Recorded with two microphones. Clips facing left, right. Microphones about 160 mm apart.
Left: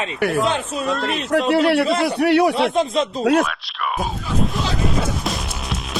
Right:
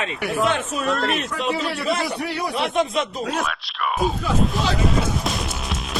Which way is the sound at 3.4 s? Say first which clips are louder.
Even; centre (ahead or behind).